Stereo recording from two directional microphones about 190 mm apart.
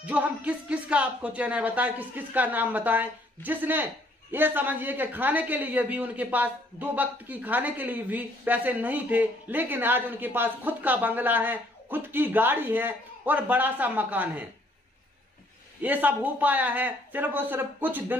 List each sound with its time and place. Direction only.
0.0 s a man's voice: 10° right (ahead or behind)
15.8 s a man's voice: 10° right (ahead or behind)